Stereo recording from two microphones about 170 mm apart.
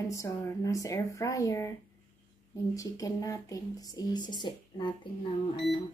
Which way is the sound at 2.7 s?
20° left (ahead or behind).